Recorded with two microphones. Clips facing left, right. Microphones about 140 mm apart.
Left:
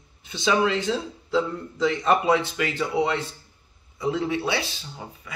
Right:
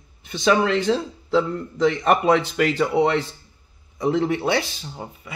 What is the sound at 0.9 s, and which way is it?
Speech, 45° right (ahead or behind).